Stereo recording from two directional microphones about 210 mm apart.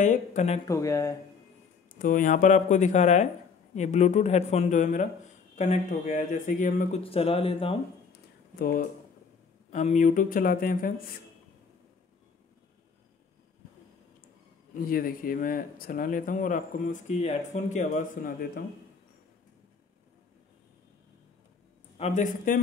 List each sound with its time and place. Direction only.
0.0 s speech: 35° left (ahead or behind)
0.7 s speech: 15° left (ahead or behind)
2.0 s speech: 40° left (ahead or behind)
7.0 s speech: 25° left (ahead or behind)
8.5 s speech: 40° left (ahead or behind)
14.7 s speech: 40° left (ahead or behind)
21.9 s speech: 35° left (ahead or behind)